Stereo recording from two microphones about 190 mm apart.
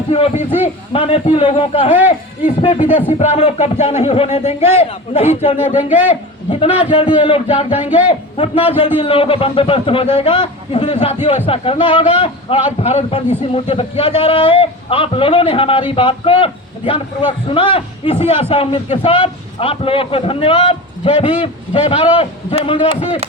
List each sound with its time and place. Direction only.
0.1 s speech: 30° left (ahead or behind)
5.7 s a man's voice: 10° right (ahead or behind)
6.5 s speech: 30° left (ahead or behind)